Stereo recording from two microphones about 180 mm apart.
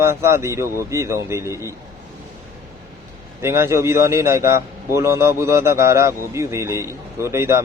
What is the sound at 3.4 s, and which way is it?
A man's voice, 15° right (ahead or behind).